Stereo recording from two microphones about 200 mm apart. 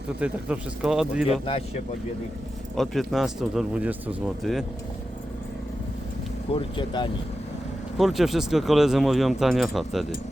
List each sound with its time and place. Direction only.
0.2 s speech: 5° right (ahead or behind)
1.3 s speech: 30° left (ahead or behind)
2.7 s speech: centre (ahead or behind)
6.5 s speech: 25° left (ahead or behind)
7.9 s speech: centre (ahead or behind)